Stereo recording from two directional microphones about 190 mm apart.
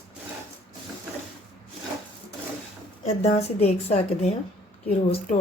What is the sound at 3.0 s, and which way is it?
A woman's voice, 30° left (ahead or behind).